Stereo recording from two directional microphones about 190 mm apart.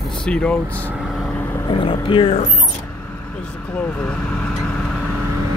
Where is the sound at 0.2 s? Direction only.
5° left (ahead or behind).